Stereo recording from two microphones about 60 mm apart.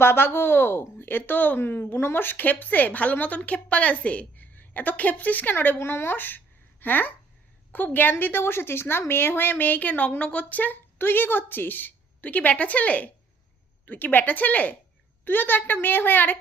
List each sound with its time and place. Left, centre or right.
0.0 s a woman's voice: left